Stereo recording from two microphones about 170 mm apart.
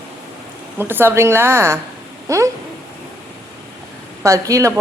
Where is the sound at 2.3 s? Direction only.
20° right (ahead or behind).